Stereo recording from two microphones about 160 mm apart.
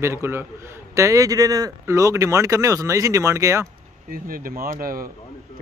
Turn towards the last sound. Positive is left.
turn(degrees=-65)  # may be behind; listen again after turning